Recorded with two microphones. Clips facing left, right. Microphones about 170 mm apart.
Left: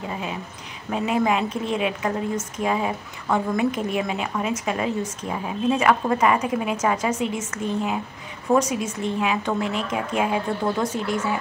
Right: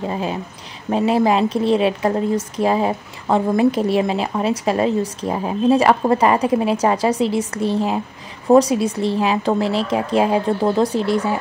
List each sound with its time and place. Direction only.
0.8 s speech: 35° right (ahead or behind)